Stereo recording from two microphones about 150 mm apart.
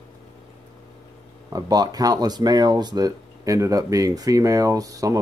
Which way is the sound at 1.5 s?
25° right (ahead or behind).